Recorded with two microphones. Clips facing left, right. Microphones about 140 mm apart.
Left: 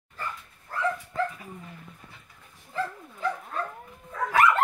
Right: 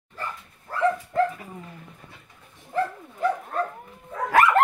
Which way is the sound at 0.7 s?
70° right (ahead or behind).